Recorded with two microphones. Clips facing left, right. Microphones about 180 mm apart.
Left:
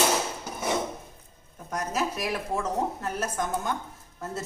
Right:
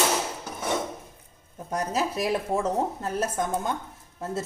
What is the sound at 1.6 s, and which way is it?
A woman's voice, 30° right (ahead or behind).